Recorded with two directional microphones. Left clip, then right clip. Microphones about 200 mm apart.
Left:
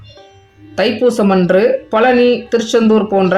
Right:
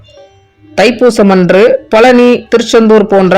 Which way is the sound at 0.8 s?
35° right (ahead or behind).